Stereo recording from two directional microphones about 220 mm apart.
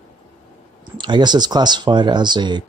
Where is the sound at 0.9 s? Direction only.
20° right (ahead or behind).